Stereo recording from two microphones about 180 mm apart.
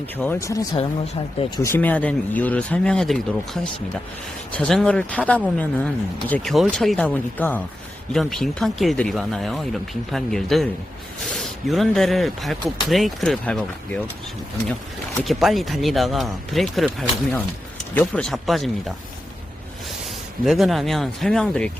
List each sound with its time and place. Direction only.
0.2 s speech: 15° left (ahead or behind)
1.7 s speech: 10° left (ahead or behind)
15.2 s speech: centre (ahead or behind)
20.4 s speech: centre (ahead or behind)